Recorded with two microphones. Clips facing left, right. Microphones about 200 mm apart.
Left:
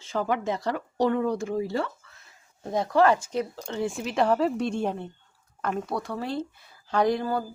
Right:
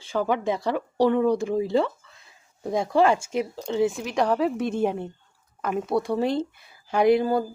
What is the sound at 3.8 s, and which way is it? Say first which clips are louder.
A woman's voice: right 2 dB; centre (ahead or behind).